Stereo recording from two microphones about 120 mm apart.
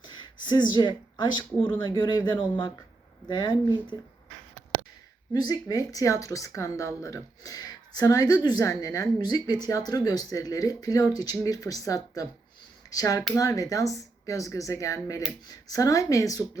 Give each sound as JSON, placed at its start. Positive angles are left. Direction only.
{"t": 0.1, "sound": "speech", "side_deg": 35}
{"t": 5.3, "sound": "speech", "side_deg": 35}